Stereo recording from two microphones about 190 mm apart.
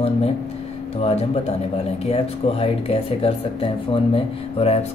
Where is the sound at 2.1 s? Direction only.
30° left (ahead or behind).